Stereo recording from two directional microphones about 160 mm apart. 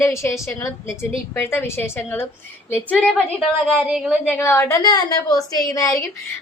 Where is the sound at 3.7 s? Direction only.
5° right (ahead or behind).